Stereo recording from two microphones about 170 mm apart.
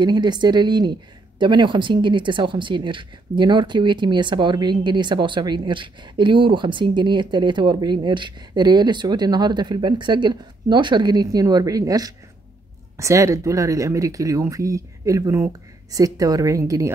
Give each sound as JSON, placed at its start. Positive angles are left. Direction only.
{"t": 0.0, "sound": "speech", "side_deg": -25}